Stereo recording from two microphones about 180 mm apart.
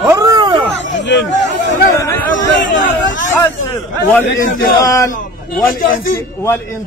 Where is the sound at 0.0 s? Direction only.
20° right (ahead or behind).